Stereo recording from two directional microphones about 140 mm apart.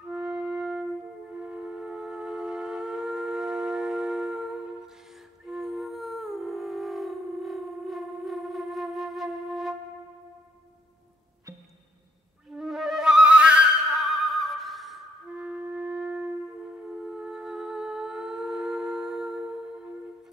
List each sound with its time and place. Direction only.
0.1 s music: 5° right (ahead or behind)
5.5 s music: centre (ahead or behind)
12.5 s flute: centre (ahead or behind)
14.1 s music: centre (ahead or behind)
17.0 s humming: 5° right (ahead or behind)